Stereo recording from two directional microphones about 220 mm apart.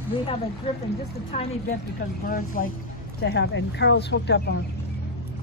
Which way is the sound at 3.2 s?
50° left (ahead or behind).